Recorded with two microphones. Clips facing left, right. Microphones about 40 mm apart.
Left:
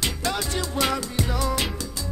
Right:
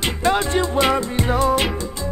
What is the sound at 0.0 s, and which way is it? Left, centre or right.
Music, right.